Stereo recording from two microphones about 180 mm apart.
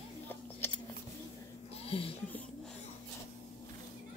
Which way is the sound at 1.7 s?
30° left (ahead or behind).